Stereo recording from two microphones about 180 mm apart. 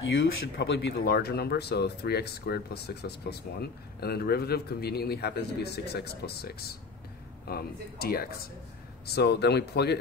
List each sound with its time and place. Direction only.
0.0 s speech: 90° left; by 9.9 s 65° left (ahead or behind)